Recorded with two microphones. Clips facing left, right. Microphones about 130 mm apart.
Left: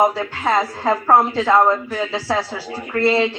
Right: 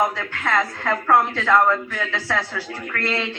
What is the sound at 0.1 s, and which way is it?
Speech, 30° left (ahead or behind).